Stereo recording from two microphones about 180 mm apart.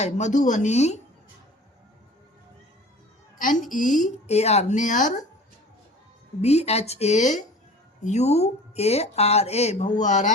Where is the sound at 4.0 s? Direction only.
35° left (ahead or behind).